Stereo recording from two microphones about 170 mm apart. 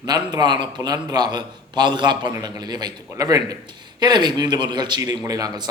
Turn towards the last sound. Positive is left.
turn(degrees=-20)  # may be behind; listen again after turning